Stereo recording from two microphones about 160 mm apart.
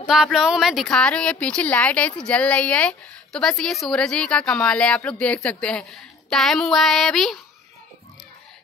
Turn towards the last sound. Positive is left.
turn(degrees=0)  # may be behind; listen again after turning